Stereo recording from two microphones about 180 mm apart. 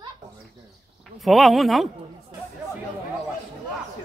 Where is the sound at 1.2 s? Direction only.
Centre (ahead or behind).